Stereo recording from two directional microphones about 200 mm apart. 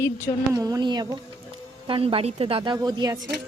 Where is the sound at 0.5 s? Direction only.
20° right (ahead or behind).